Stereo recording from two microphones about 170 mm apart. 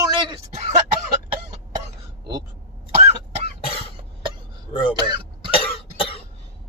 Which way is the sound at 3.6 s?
35° left (ahead or behind).